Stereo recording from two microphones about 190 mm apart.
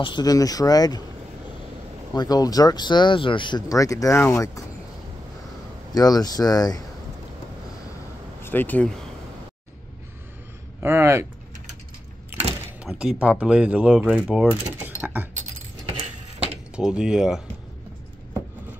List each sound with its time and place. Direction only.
0.0 s speech: 20° left (ahead or behind)
2.1 s speech: 20° left (ahead or behind)
5.9 s speech: 20° left (ahead or behind)
8.4 s speech: 10° left (ahead or behind)
10.8 s speech: 15° right (ahead or behind)
12.8 s speech: 5° right (ahead or behind)
16.7 s speech: 5° right (ahead or behind)